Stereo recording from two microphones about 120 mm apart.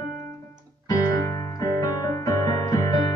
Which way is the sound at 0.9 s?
25° left (ahead or behind).